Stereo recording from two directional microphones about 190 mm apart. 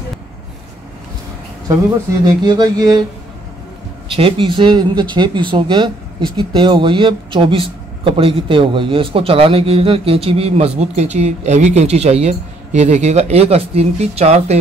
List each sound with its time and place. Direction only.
2.4 s speech: 20° right (ahead or behind)
4.1 s speech: 30° right (ahead or behind)